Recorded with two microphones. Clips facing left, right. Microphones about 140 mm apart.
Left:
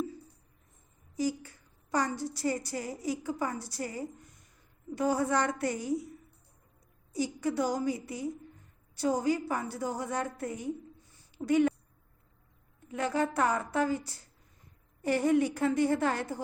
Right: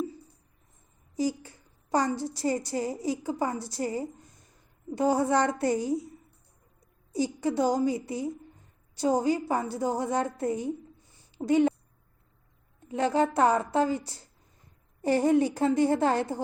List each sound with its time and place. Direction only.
1.1 s a woman's voice: 25° right (ahead or behind)
7.1 s a woman's voice: 25° right (ahead or behind)
12.9 s a woman's voice: 25° right (ahead or behind)